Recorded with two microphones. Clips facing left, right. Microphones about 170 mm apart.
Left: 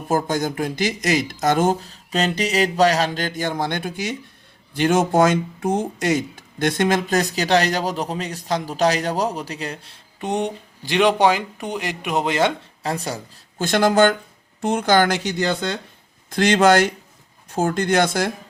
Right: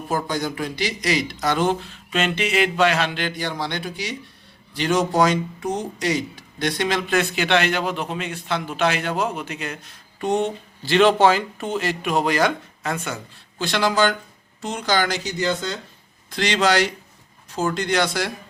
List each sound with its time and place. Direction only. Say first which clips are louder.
0.1 s speech: left 4 dB; 45° left (ahead or behind); by 10.0 s 30° left (ahead or behind)
10.2 s speech: right 2 dB; 20° left (ahead or behind); by 15.8 s 65° left (ahead or behind)
16.3 s speech: left 5 dB; 50° left (ahead or behind)